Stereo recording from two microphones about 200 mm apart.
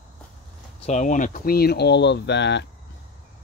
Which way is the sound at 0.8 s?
35° left (ahead or behind).